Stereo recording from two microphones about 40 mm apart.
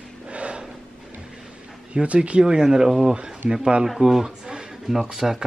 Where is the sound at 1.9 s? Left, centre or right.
Right.